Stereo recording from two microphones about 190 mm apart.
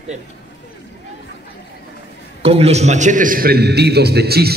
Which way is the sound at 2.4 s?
35° right (ahead or behind).